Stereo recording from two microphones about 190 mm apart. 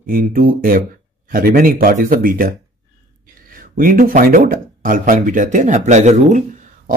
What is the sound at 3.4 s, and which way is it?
Speech, 50° right (ahead or behind).